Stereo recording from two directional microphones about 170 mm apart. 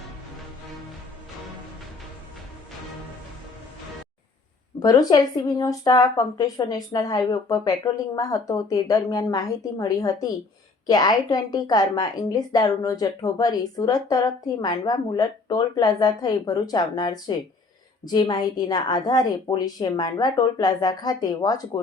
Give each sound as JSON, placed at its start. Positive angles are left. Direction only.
{"t": 4.8, "sound": "a woman's voice", "side_deg": 20}